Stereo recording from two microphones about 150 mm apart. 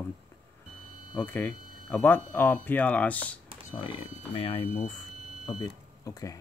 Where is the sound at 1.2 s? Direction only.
15° left (ahead or behind).